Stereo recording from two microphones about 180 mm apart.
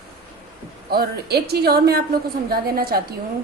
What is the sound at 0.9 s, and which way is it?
A woman's voice, 60° right (ahead or behind).